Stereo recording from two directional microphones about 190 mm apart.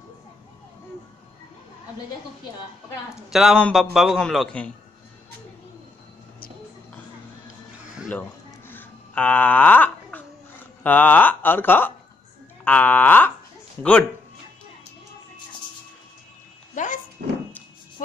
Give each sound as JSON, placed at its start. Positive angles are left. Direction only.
{"t": 3.3, "sound": "a man's voice", "side_deg": 0}
{"t": 7.4, "sound": "music", "side_deg": -5}
{"t": 8.1, "sound": "a sound", "side_deg": 10}
{"t": 10.8, "sound": "speech", "side_deg": 10}
{"t": 16.7, "sound": "thunk", "side_deg": 40}